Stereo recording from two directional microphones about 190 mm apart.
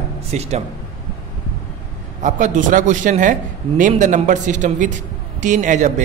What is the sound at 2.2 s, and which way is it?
Speech, 40° right (ahead or behind).